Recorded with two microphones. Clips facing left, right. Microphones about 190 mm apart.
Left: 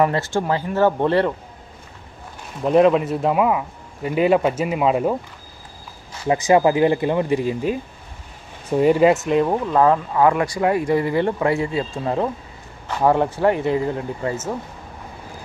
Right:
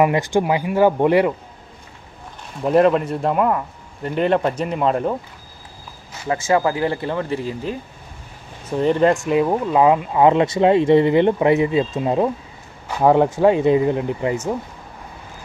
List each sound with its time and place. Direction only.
0.0 s speech: 15° right (ahead or behind)
2.6 s a man's voice: centre (ahead or behind)
6.2 s speech: 20° left (ahead or behind); by 14.4 s 20° right (ahead or behind)